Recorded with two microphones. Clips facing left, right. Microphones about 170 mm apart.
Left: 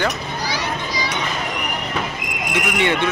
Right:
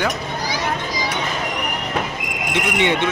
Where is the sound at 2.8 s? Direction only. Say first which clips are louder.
Even; 20° right (ahead or behind).